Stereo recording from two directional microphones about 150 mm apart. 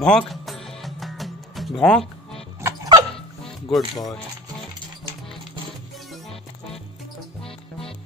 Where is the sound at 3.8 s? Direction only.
25° left (ahead or behind).